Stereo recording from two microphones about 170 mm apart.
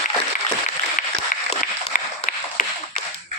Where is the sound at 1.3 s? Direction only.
50° left (ahead or behind).